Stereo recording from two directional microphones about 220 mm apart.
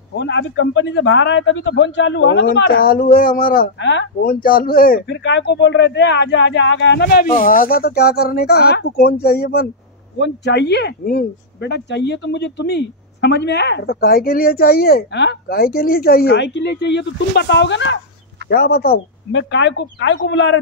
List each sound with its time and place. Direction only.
0.2 s speech: 55° left (ahead or behind)
4.3 s speech: 40° left (ahead or behind)
18.5 s speech: 45° left (ahead or behind)